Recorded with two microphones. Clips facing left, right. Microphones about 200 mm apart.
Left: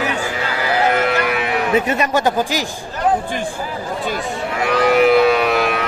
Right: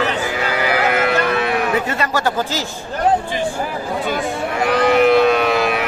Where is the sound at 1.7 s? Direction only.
20° left (ahead or behind).